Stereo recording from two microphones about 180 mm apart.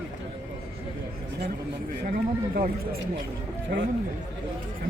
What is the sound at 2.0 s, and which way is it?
Speech, 50° right (ahead or behind).